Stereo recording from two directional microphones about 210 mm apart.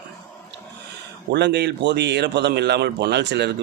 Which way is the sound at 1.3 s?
55° right (ahead or behind).